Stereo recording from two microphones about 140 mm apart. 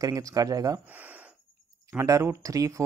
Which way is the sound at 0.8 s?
10° right (ahead or behind).